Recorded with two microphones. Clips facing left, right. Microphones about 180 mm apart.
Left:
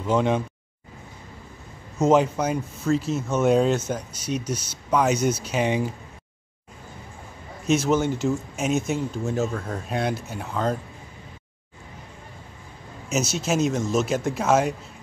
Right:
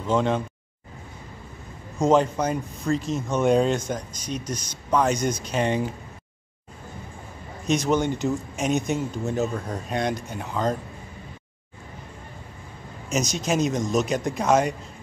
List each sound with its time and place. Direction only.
0.0 s speech: 10° left (ahead or behind)
2.0 s speech: 10° left (ahead or behind)
7.6 s speech: 5° left (ahead or behind)
13.1 s speech: 5° left (ahead or behind)